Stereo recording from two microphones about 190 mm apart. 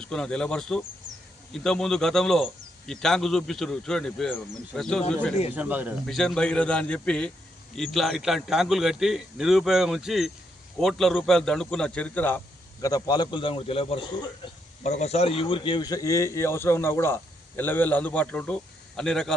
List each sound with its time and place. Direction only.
0.1 s a man's voice: 5° left (ahead or behind)
1.1 s a sound: 5° right (ahead or behind)
1.5 s a man's voice: 5° left (ahead or behind)
5.5 s a man's voice: 10° right (ahead or behind)
6.1 s a man's voice: 5° left (ahead or behind)
12.8 s a man's voice: 20° left (ahead or behind); by 19.4 s 5° left (ahead or behind)